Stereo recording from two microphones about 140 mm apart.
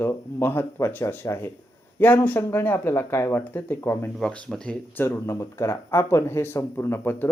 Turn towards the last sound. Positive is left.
turn(degrees=15)  # may be behind; listen again after turning